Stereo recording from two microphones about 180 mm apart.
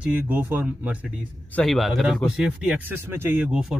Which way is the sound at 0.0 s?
10° right (ahead or behind).